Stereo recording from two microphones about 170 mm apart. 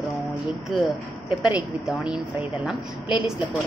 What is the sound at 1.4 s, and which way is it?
Speech, 5° right (ahead or behind).